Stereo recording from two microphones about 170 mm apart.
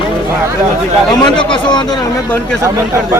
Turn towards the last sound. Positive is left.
turn(degrees=25)  # may be behind; listen again after turning